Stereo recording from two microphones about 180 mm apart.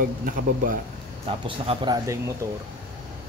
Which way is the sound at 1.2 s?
30° right (ahead or behind).